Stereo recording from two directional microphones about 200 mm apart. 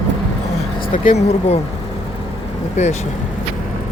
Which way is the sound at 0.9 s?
40° left (ahead or behind).